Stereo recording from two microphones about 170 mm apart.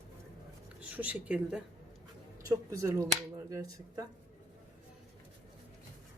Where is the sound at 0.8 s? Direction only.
10° right (ahead or behind).